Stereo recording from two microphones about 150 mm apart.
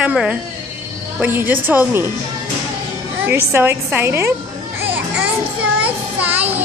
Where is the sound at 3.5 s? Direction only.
15° right (ahead or behind).